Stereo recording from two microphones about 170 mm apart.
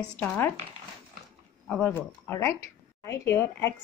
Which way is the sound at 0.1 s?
10° left (ahead or behind).